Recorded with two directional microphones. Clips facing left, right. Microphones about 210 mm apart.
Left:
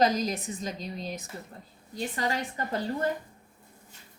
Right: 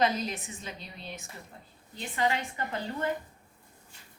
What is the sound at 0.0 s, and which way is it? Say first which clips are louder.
A woman's voice: left 3 dB; 40° left (ahead or behind).